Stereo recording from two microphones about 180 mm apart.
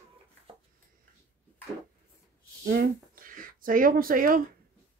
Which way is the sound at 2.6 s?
55° right (ahead or behind).